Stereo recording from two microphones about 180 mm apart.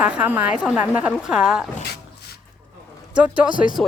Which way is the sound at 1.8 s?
60° left (ahead or behind).